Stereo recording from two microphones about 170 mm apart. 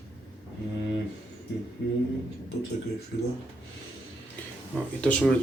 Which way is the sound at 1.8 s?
80° left.